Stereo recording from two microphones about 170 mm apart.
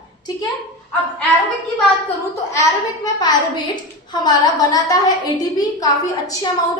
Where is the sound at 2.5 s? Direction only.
20° left (ahead or behind).